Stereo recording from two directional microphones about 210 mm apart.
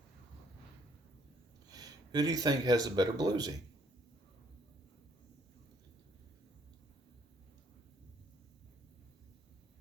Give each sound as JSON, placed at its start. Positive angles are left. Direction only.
{"t": 1.7, "sound": "speech", "side_deg": -20}